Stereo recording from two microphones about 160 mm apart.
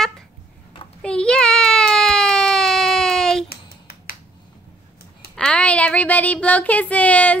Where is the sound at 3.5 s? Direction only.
75° left (ahead or behind).